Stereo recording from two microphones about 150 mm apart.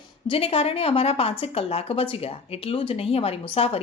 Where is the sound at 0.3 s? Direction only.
40° left (ahead or behind).